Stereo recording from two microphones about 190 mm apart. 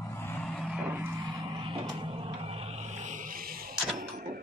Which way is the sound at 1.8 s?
30° right (ahead or behind).